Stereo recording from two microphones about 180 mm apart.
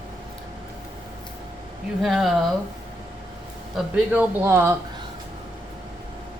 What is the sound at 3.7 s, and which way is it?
Speech, 10° right (ahead or behind).